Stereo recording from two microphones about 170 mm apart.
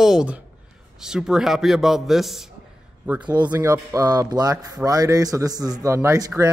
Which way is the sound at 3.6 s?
20° right (ahead or behind).